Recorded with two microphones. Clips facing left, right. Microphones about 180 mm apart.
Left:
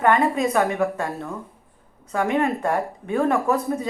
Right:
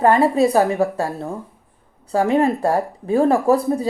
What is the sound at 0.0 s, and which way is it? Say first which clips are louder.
A woman's voice: right 5 dB; 35° right (ahead or behind).